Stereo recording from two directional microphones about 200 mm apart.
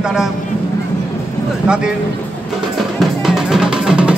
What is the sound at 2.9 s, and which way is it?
Music, centre (ahead or behind).